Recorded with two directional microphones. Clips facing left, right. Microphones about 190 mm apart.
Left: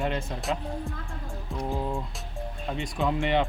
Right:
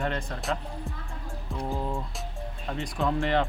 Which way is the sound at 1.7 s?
Centre (ahead or behind).